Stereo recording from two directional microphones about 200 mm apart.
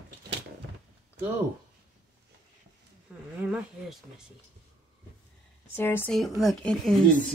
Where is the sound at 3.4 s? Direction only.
5° right (ahead or behind).